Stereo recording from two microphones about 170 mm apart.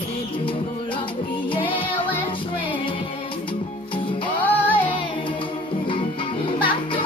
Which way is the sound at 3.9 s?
30° left (ahead or behind).